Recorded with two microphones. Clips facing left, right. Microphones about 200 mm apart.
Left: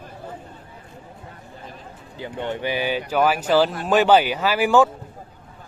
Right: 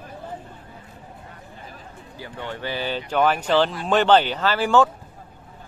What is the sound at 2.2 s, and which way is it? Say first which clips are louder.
Speech: left 5 dB; 20° left (ahead or behind).